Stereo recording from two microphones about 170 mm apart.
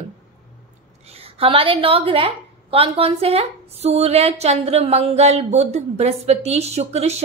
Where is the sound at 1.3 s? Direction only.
35° right (ahead or behind).